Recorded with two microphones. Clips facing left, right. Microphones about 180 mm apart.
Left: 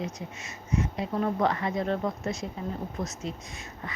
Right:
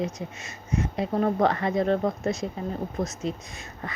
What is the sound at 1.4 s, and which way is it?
Speech, 65° right (ahead or behind).